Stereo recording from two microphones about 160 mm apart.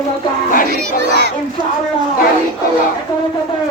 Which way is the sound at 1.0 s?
90° right.